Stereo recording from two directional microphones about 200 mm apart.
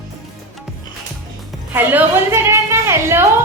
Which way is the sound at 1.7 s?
10° right (ahead or behind).